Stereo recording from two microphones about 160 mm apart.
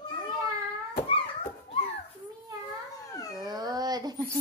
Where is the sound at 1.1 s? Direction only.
35° left (ahead or behind).